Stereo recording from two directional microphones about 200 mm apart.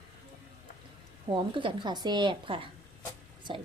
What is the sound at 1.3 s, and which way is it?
A woman's voice, 25° right (ahead or behind).